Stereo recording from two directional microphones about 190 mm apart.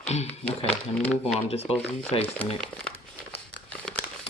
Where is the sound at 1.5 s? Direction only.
35° left (ahead or behind).